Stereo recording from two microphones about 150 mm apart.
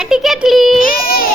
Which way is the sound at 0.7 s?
70° left (ahead or behind).